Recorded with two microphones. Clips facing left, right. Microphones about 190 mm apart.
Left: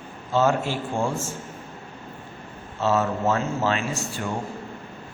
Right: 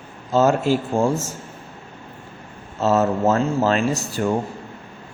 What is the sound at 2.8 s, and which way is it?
Speech, 40° right (ahead or behind).